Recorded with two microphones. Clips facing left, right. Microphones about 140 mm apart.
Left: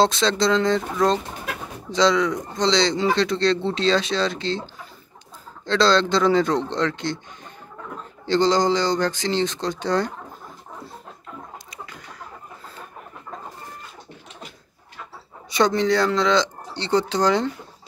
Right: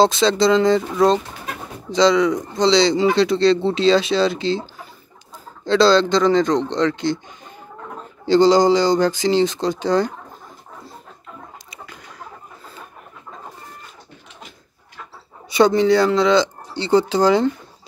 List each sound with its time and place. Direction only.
0.0 s speech: 5° right (ahead or behind)
5.7 s speech: 5° right (ahead or behind)
8.3 s speech: 10° right (ahead or behind)
15.5 s speech: 5° right (ahead or behind)